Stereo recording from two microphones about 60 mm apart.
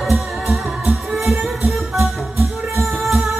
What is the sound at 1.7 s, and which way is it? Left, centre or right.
Music, centre.